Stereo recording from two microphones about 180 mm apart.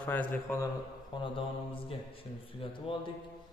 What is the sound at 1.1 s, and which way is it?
Mantra, 25° left (ahead or behind).